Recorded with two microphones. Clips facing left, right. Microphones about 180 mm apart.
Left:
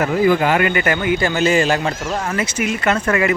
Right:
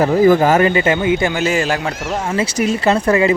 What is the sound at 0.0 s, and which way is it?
Speech, 40° right (ahead or behind).